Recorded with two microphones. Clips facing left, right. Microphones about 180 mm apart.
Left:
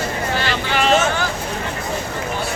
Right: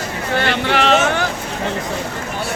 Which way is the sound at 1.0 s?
65° right (ahead or behind).